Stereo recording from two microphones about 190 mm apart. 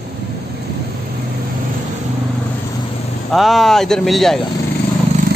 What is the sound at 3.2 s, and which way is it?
Speech, centre (ahead or behind).